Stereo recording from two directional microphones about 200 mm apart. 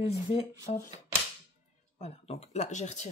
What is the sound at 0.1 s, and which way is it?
Speech, 30° left (ahead or behind).